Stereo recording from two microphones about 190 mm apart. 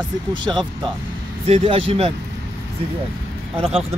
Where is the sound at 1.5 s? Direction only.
30° right (ahead or behind).